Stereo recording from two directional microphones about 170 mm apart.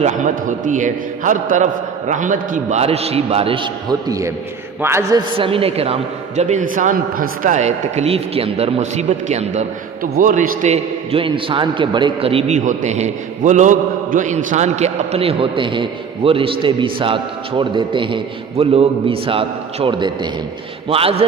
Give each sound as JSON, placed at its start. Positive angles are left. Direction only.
{"t": 0.0, "sound": "a man's voice", "side_deg": -50}
{"t": 5.4, "sound": "a man's voice", "side_deg": -35}
{"t": 10.0, "sound": "a man's voice", "side_deg": -55}